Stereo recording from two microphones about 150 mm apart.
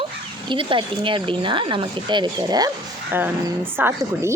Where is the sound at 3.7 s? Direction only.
15° right (ahead or behind).